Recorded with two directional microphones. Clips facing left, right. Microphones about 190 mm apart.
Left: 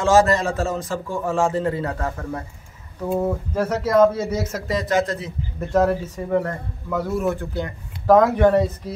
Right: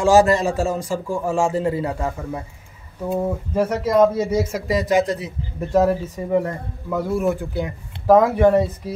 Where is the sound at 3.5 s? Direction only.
10° right (ahead or behind).